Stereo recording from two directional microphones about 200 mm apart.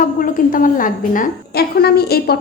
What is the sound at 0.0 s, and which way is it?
A woman's voice, 45° left (ahead or behind).